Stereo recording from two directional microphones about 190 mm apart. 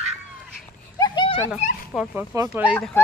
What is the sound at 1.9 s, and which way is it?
Speech, 5° left (ahead or behind).